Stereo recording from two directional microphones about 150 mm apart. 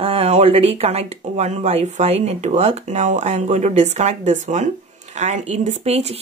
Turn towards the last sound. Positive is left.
turn(degrees=-45)  # may be behind; listen again after turning